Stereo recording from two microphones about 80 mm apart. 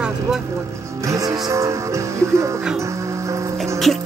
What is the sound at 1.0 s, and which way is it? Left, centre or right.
Music, right.